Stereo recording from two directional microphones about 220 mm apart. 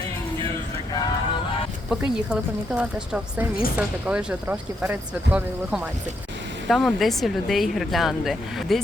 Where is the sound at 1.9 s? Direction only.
5° right (ahead or behind).